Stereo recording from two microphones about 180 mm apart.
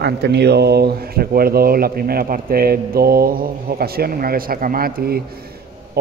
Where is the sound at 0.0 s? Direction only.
70° right (ahead or behind).